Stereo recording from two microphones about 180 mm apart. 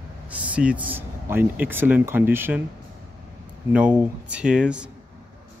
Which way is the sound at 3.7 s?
5° right (ahead or behind).